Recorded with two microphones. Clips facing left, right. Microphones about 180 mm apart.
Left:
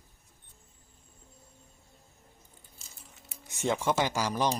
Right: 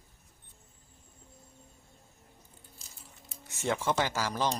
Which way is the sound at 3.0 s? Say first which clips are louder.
Even; centre (ahead or behind).